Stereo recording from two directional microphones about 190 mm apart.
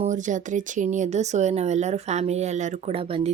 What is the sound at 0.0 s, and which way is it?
Speech, 40° right (ahead or behind).